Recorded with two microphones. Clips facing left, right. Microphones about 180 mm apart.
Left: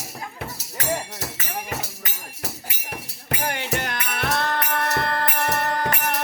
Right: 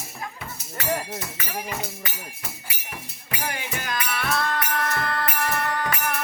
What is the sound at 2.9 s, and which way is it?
Music, 60° left (ahead or behind).